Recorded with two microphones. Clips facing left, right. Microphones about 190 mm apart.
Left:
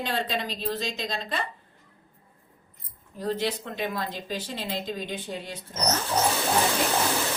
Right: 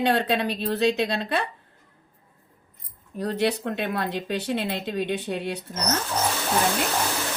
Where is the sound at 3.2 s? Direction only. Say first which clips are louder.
Right 4 dB; 65° right (ahead or behind).